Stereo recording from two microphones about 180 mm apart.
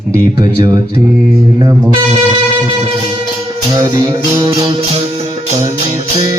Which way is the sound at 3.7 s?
15° right (ahead or behind).